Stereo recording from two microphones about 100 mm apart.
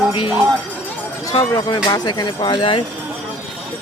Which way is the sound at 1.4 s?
40° left (ahead or behind).